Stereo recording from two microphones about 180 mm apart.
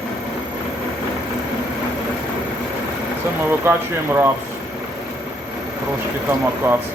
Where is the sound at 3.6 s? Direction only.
10° right (ahead or behind).